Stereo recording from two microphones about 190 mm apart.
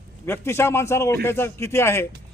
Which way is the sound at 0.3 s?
10° left (ahead or behind).